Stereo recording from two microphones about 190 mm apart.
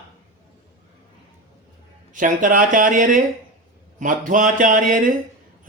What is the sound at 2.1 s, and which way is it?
Speech, 45° right (ahead or behind).